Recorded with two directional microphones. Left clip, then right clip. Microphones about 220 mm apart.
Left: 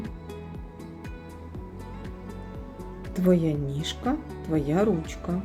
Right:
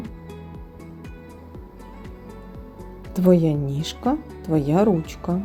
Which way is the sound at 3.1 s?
25° right (ahead or behind).